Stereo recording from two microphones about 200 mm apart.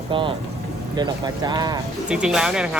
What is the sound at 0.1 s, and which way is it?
Speech, 25° right (ahead or behind).